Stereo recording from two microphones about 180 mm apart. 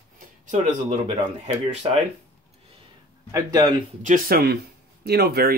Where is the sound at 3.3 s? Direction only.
20° right (ahead or behind).